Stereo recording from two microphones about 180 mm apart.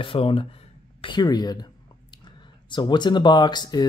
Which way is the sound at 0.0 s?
30° left (ahead or behind).